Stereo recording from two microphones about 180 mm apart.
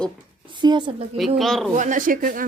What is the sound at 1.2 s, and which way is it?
Speech, centre (ahead or behind).